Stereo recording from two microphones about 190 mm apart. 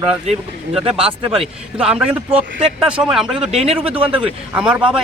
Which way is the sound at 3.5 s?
30° right (ahead or behind).